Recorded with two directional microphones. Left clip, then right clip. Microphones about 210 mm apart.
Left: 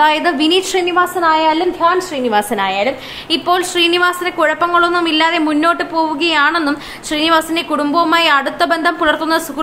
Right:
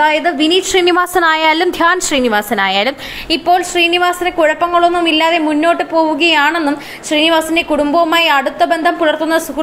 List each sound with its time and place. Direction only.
0.0 s a woman's voice: 5° right (ahead or behind)
0.8 s a woman's voice: 25° right (ahead or behind)
2.2 s a woman's voice: 10° right (ahead or behind)
5.9 s a woman's voice: 15° right (ahead or behind)